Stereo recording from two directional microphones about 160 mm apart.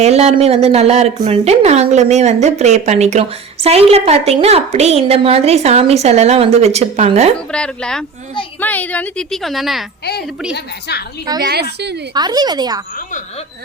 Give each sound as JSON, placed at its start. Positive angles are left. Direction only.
{"t": 0.0, "sound": "speech", "side_deg": -45}
{"t": 7.3, "sound": "a woman's voice", "side_deg": 5}
{"t": 10.5, "sound": "a woman's voice", "side_deg": 90}
{"t": 12.1, "sound": "a woman's voice", "side_deg": -25}